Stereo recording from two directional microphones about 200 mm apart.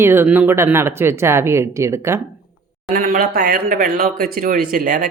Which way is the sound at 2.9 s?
45° right (ahead or behind).